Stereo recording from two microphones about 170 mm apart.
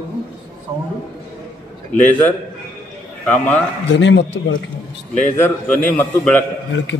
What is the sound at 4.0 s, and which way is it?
Speech, 90° left.